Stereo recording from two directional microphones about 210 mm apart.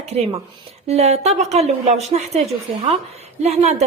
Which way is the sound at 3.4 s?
30° right (ahead or behind).